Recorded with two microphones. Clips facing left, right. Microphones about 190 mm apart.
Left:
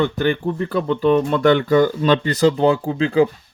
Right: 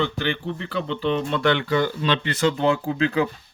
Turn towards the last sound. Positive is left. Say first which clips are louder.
# left 5 dB
turn(degrees=30)  # may be behind; listen again after turning